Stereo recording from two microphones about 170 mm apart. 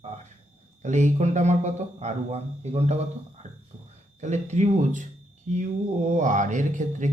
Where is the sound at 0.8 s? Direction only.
45° right (ahead or behind).